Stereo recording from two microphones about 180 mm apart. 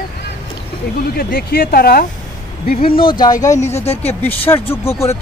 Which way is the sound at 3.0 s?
25° left (ahead or behind).